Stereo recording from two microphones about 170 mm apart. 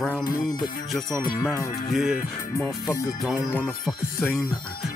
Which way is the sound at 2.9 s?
20° left (ahead or behind).